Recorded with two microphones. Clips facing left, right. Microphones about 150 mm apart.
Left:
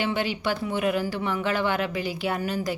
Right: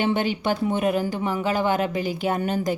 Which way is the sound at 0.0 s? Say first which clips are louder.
Right 3 dB; 50° right (ahead or behind).